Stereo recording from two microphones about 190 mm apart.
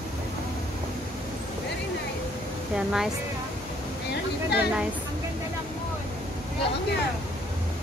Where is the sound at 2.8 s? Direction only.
5° right (ahead or behind).